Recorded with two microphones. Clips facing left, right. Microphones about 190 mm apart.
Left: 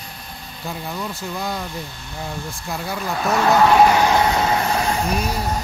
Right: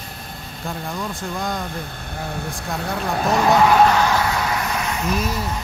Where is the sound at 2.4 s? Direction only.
65° right (ahead or behind).